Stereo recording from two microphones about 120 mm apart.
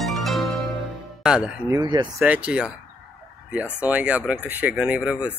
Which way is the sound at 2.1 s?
10° right (ahead or behind).